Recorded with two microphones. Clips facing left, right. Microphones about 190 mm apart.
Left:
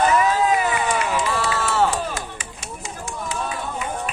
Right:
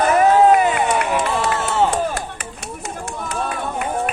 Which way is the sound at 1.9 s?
60° right (ahead or behind).